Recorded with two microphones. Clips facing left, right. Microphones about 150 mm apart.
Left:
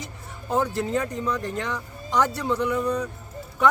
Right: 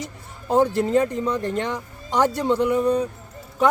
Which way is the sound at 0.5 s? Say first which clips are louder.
Right 6 dB; 30° right (ahead or behind).